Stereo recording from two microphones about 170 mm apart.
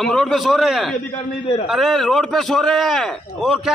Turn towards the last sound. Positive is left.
turn(degrees=0)  # may be behind; listen again after turning